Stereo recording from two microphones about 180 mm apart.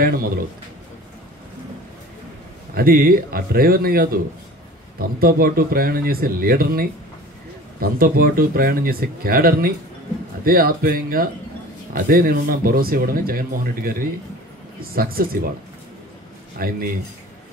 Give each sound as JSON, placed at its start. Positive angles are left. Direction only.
{"t": 0.0, "sound": "speech", "side_deg": -55}
{"t": 2.7, "sound": "speech", "side_deg": -55}
{"t": 16.5, "sound": "speech", "side_deg": -55}